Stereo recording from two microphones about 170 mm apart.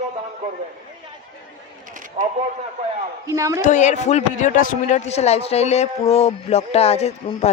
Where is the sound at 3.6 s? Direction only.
45° left (ahead or behind).